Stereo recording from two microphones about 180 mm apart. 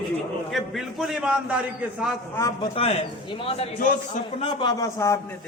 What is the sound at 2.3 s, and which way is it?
Speech, 15° left (ahead or behind).